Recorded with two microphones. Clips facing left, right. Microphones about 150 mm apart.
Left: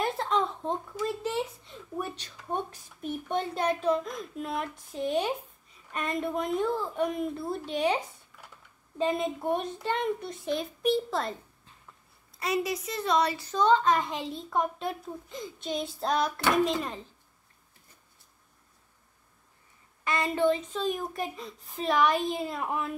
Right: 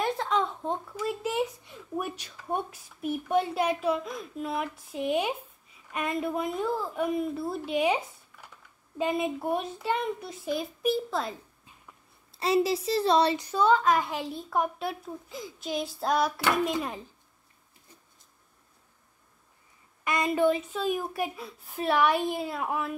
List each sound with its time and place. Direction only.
0.0 s a sound: centre (ahead or behind)
3.0 s a woman's voice: 5° right (ahead or behind)
12.3 s a child's voice: 30° right (ahead or behind)
13.4 s a child's voice: 10° right (ahead or behind)
20.1 s a woman's voice: 15° right (ahead or behind)